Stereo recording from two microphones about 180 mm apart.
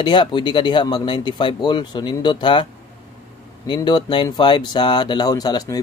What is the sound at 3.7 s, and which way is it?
Speech, 25° left (ahead or behind).